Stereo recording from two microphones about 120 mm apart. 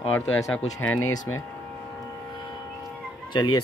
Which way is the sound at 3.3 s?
40° left (ahead or behind).